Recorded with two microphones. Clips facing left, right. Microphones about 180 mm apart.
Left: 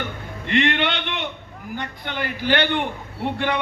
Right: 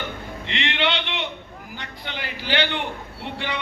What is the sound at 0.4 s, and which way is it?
A man's voice, 50° left (ahead or behind).